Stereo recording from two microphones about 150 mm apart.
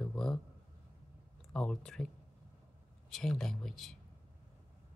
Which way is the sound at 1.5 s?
5° left (ahead or behind).